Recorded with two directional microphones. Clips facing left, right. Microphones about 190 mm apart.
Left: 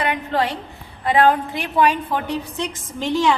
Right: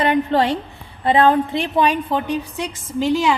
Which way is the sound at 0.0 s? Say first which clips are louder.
Right 5 dB; 30° right (ahead or behind).